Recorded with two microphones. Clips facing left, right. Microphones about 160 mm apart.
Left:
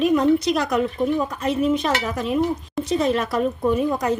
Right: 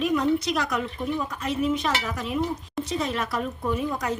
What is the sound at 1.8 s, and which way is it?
Speech, 30° left (ahead or behind).